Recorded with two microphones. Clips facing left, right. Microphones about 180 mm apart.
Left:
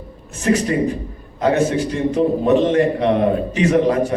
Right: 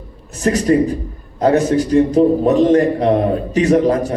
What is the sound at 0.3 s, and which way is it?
A man's voice, 40° right (ahead or behind).